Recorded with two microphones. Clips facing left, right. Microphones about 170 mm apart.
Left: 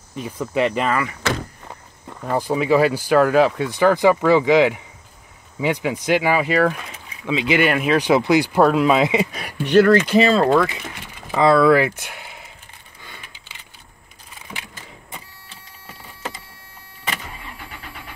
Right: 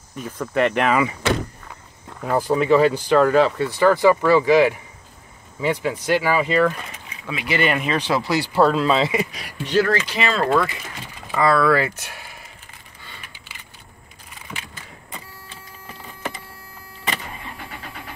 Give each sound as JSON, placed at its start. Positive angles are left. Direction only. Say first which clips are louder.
{"t": 0.2, "sound": "speech", "louder": "even", "side_deg": 10}
{"t": 0.8, "sound": "speech", "louder": "right 2 dB", "side_deg": -15}
{"t": 2.0, "sound": "speech", "louder": "right 1 dB", "side_deg": 0}
{"t": 7.6, "sound": "speech", "louder": "left 3 dB", "side_deg": 5}
{"t": 8.1, "sound": "speech", "louder": "left 7 dB", "side_deg": 20}
{"t": 9.3, "sound": "speech", "louder": "left 6 dB", "side_deg": 60}
{"t": 10.1, "sound": "speech", "louder": "left 8 dB", "side_deg": 35}
{"t": 11.3, "sound": "speech", "louder": "left 4 dB", "side_deg": 20}
{"t": 13.0, "sound": "a sound", "louder": "left 1 dB", "side_deg": 15}